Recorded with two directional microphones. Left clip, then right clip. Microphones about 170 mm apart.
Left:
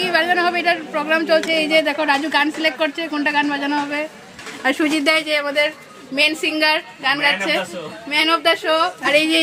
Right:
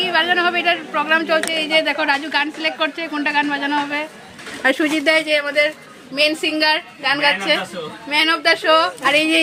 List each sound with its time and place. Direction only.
0.0 s a woman's voice: 20° left (ahead or behind); by 9.4 s centre (ahead or behind)